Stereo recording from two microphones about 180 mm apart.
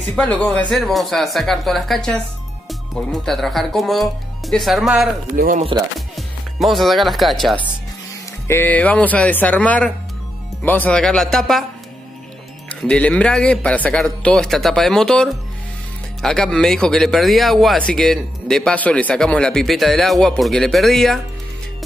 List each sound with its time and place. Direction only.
0.1 s speech: 5° left (ahead or behind)
5.3 s speech: 45° right (ahead or behind)
5.9 s speech: centre (ahead or behind)
12.6 s speech: 5° left (ahead or behind)